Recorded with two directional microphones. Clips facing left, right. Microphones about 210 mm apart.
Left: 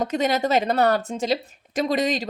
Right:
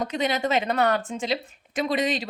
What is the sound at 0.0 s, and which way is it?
Speech, 45° left (ahead or behind).